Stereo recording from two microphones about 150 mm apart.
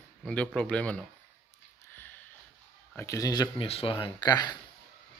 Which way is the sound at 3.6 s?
40° left (ahead or behind).